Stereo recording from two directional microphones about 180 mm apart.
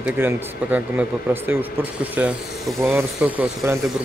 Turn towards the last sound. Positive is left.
turn(degrees=-10)  # may be behind; listen again after turning